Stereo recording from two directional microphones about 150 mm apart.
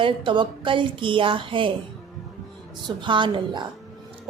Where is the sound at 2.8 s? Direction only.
30° right (ahead or behind).